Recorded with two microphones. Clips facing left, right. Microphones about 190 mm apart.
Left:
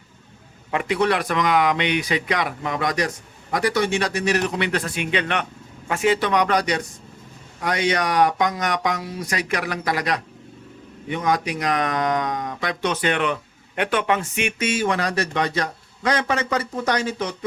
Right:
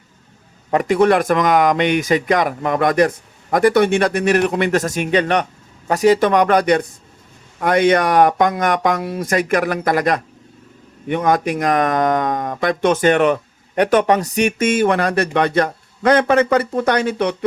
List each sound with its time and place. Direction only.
0.7 s speech: 45° right (ahead or behind); by 17.3 s 60° right (ahead or behind)